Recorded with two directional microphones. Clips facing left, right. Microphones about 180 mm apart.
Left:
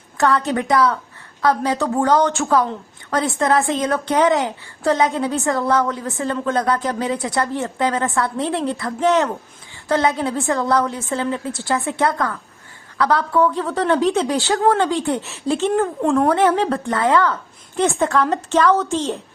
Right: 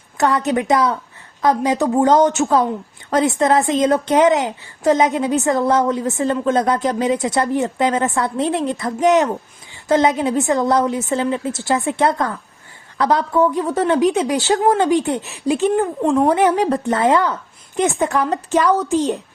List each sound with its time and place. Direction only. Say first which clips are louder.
0.2 s a woman's voice: right 1 dB; 20° right (ahead or behind)
16.0 s speech: right 1 dB; centre (ahead or behind)
16.3 s a woman's voice: right 1 dB; 15° right (ahead or behind)